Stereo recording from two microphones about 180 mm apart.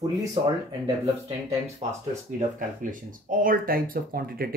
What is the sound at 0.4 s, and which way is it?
Speech, 25° right (ahead or behind).